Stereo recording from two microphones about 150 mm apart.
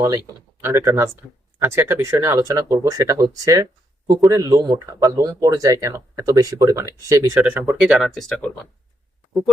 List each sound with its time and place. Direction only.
0.6 s speech: 15° right (ahead or behind)
7.7 s speech: 5° right (ahead or behind)